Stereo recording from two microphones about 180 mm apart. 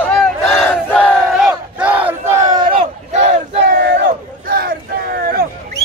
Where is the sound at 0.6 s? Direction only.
5° left (ahead or behind); by 3.4 s 30° right (ahead or behind).